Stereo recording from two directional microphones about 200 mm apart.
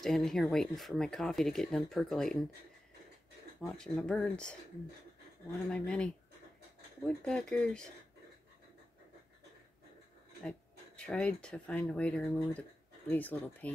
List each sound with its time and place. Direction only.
0.0 s speech: centre (ahead or behind)
3.6 s speech: 5° left (ahead or behind)
5.7 s speech: 5° left (ahead or behind)
11.0 s speech: 5° left (ahead or behind)